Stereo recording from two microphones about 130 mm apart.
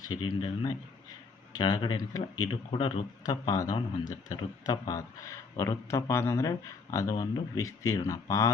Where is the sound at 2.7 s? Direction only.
45° left (ahead or behind).